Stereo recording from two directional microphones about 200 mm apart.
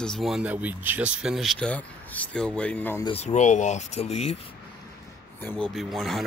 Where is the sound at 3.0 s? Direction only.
30° left (ahead or behind).